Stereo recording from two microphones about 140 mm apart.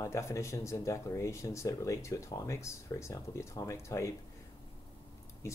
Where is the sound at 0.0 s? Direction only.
20° left (ahead or behind).